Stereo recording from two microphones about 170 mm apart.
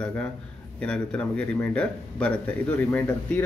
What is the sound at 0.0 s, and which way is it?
Speech, 5° left (ahead or behind).